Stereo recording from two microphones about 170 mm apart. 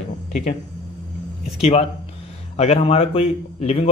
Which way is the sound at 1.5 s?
40° left (ahead or behind).